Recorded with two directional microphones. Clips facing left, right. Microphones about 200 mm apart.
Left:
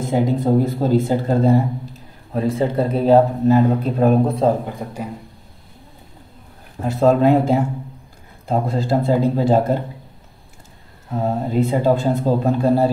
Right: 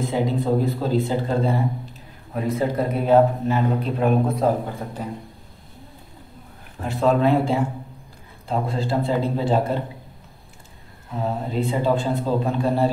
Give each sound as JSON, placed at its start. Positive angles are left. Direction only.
{"t": 0.0, "sound": "speech", "side_deg": 45}
{"t": 2.3, "sound": "a man's voice", "side_deg": 30}
{"t": 4.8, "sound": "speech", "side_deg": 10}
{"t": 6.8, "sound": "a man's voice", "side_deg": 40}
{"t": 11.2, "sound": "a man's voice", "side_deg": 40}